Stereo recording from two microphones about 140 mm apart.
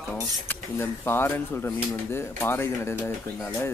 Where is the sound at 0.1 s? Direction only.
15° left (ahead or behind).